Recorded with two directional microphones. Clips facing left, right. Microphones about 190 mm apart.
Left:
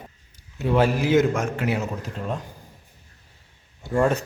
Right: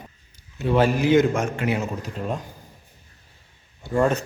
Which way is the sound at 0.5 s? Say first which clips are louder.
Right 1 dB; 10° left (ahead or behind).